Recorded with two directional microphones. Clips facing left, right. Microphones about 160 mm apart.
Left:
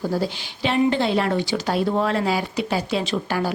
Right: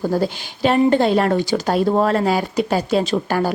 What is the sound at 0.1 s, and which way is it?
Speech, 50° right (ahead or behind).